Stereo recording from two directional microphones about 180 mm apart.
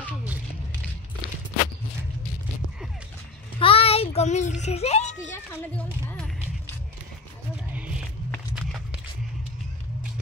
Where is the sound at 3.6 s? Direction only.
30° left (ahead or behind).